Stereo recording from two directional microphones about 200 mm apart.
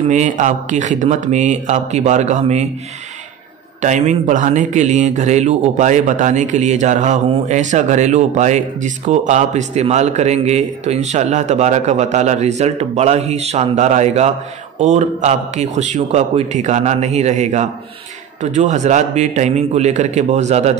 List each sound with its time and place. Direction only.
0.1 s a man's voice: 35° right (ahead or behind)
3.8 s a man's voice: 35° right (ahead or behind)